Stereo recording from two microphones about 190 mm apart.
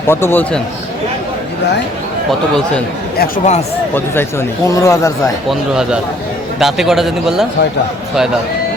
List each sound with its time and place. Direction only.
0.1 s speech: 10° left (ahead or behind)
3.2 s speech: 45° left (ahead or behind)
3.9 s speech: 10° left (ahead or behind)
5.5 s a man's voice: 5° right (ahead or behind)